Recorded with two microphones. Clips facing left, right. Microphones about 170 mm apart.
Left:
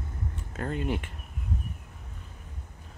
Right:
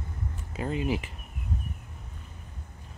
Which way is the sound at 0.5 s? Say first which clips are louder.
Right 2 dB; 5° right (ahead or behind).